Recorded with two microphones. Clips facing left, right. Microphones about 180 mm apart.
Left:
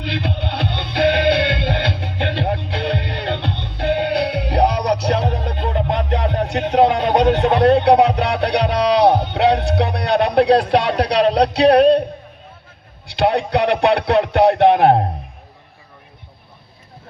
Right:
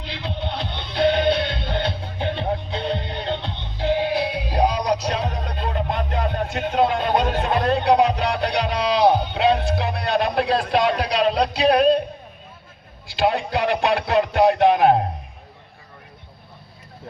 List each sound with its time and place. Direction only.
0.0 s music: 65° left (ahead or behind)
13.1 s a man's voice: 65° left (ahead or behind)